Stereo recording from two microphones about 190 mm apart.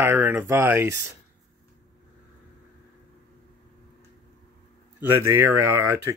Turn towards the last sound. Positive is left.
turn(degrees=-15)  # may be behind; listen again after turning